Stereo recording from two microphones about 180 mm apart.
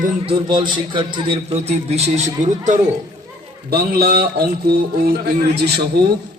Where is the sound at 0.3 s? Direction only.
25° right (ahead or behind).